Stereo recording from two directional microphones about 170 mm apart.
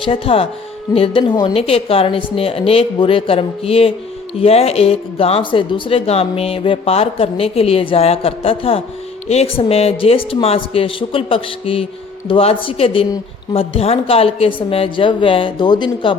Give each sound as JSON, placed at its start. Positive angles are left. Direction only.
{"t": 0.0, "sound": "speech", "side_deg": 35}